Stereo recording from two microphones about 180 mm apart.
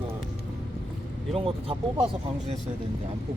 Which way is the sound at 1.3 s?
30° right (ahead or behind).